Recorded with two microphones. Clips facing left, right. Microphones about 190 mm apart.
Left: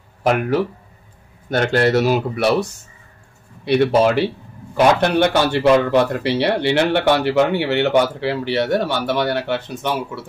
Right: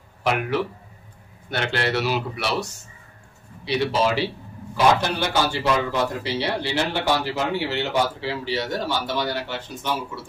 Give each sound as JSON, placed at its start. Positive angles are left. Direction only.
{"t": 0.2, "sound": "a man's voice", "side_deg": 45}